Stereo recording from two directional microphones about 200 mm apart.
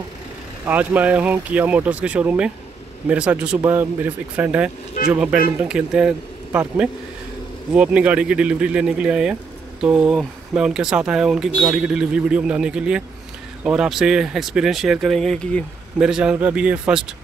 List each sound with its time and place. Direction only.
0.7 s speech: 5° right (ahead or behind)